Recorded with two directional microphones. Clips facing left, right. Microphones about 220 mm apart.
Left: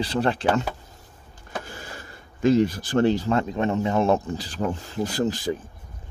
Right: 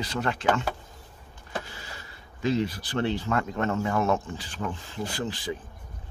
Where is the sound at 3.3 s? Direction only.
25° left (ahead or behind); by 5.5 s 40° left (ahead or behind).